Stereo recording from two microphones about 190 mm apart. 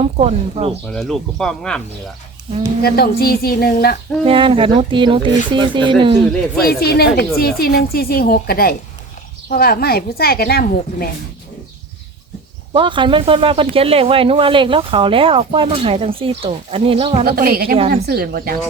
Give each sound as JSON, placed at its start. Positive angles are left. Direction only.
{"t": 0.0, "sound": "speech", "side_deg": -30}
{"t": 0.9, "sound": "speech", "side_deg": 0}
{"t": 2.8, "sound": "a woman's voice", "side_deg": 55}
{"t": 4.3, "sound": "speech", "side_deg": -30}
{"t": 6.7, "sound": "a woman's voice", "side_deg": 55}
{"t": 12.7, "sound": "speech", "side_deg": -25}
{"t": 17.2, "sound": "speech", "side_deg": -50}